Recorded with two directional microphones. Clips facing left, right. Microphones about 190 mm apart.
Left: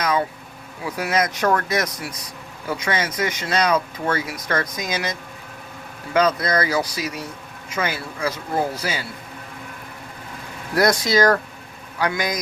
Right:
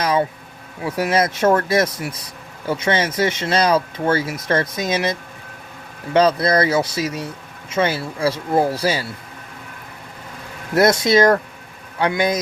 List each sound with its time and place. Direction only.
0.0 s speech: 30° right (ahead or behind)
6.1 s speech: 30° right (ahead or behind)
10.8 s speech: 25° right (ahead or behind)